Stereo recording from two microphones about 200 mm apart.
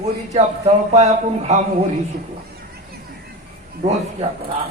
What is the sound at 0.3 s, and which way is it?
Mantra, 35° right (ahead or behind).